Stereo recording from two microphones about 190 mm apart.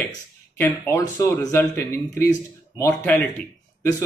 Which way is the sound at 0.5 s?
10° left (ahead or behind).